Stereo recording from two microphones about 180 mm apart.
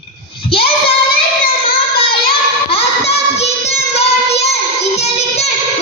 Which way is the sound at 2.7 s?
35° left (ahead or behind).